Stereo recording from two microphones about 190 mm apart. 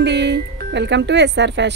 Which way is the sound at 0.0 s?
65° right (ahead or behind).